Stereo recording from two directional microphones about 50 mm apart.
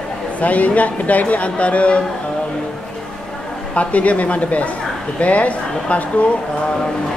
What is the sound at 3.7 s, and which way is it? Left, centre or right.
Speech, left.